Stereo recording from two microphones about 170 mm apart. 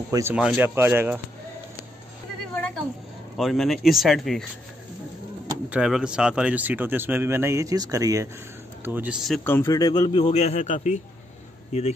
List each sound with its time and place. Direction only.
0.1 s speech: 15° right (ahead or behind)
3.3 s speech: centre (ahead or behind)
5.7 s speech: 5° right (ahead or behind)
9.4 s speech: 10° left (ahead or behind)
9.7 s a man's voice: 20° left (ahead or behind); by 11.0 s 45° left (ahead or behind)